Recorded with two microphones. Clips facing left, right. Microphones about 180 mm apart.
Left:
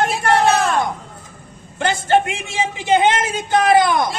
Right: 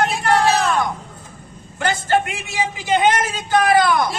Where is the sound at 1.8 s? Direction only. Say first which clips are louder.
Left 2 dB; 25° left (ahead or behind).